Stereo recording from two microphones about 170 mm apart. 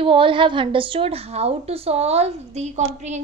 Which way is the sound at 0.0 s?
30° right (ahead or behind).